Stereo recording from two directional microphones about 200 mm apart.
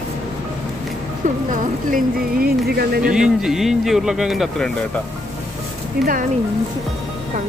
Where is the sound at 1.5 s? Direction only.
45° right (ahead or behind).